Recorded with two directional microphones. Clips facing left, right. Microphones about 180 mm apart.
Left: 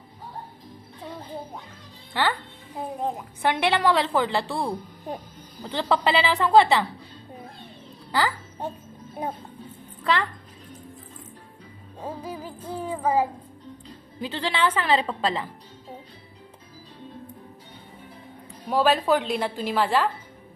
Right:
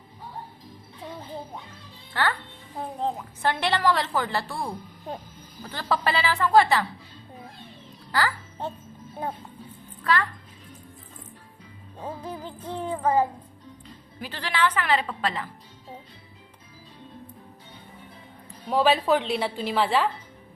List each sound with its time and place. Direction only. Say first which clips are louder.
2.7 s a woman's voice: even; 15° left (ahead or behind)
8.1 s a sound: left 1 dB; 15° left (ahead or behind)
9.2 s a woman's voice: left 1 dB; 15° left (ahead or behind)
12.0 s a woman's voice: left 1 dB; 10° left (ahead or behind)
14.2 s speech: left 1 dB; 25° left (ahead or behind)
18.7 s a woman's voice: even; centre (ahead or behind)